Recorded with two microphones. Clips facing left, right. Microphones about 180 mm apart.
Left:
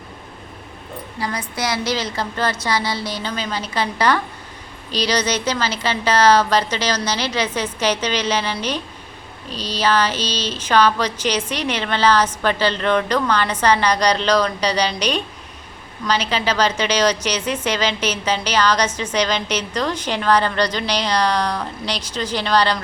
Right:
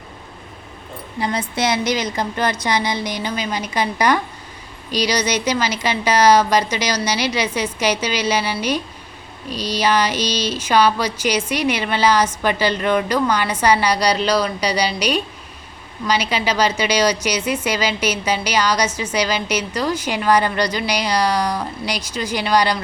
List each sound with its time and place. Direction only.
1.2 s speech: 25° right (ahead or behind)